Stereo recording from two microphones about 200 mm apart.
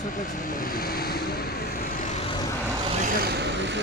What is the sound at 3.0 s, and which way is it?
Vehicle, 50° right (ahead or behind).